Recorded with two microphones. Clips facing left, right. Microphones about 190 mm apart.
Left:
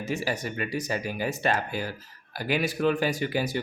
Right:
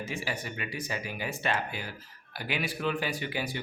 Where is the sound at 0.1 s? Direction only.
40° left (ahead or behind).